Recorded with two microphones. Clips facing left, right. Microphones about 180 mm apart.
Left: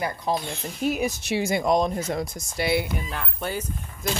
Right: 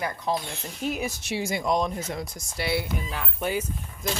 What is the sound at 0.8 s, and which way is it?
Speech, 10° left (ahead or behind).